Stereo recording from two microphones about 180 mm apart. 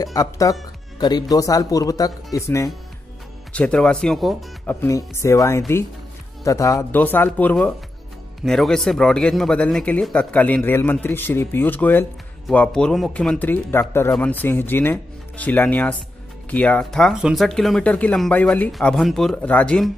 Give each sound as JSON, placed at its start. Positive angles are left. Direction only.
{"t": 0.0, "sound": "speech", "side_deg": 20}
{"t": 4.8, "sound": "speech", "side_deg": 15}